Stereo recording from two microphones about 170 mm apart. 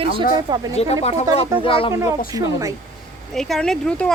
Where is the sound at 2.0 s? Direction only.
20° right (ahead or behind).